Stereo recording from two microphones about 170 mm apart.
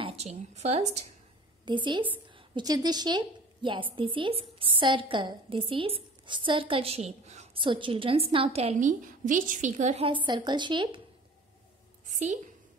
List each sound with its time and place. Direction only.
0.0 s a woman's voice: 35° right (ahead or behind)
1.7 s a woman's voice: 30° right (ahead or behind)
7.6 s a woman's voice: 30° right (ahead or behind); by 10.0 s 45° right (ahead or behind)
10.0 s a woman's voice: 30° right (ahead or behind)
12.1 s a sound: 45° right (ahead or behind)